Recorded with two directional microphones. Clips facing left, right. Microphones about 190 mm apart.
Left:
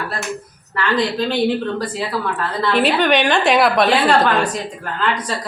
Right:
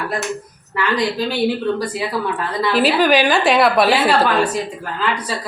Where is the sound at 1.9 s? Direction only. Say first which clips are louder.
Right 1 dB; 15° right (ahead or behind).